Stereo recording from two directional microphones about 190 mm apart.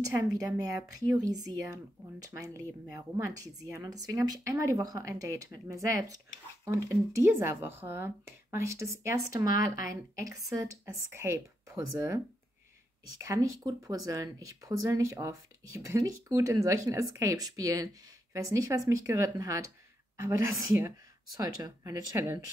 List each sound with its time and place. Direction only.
0.0 s speech: 15° right (ahead or behind)
13.2 s speech: 15° right (ahead or behind)